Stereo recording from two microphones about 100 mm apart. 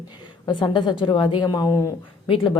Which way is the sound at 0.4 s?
50° left (ahead or behind).